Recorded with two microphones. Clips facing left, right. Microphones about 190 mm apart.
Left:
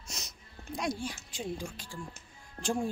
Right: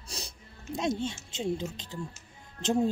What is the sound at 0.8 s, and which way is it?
Speech, 25° right (ahead or behind).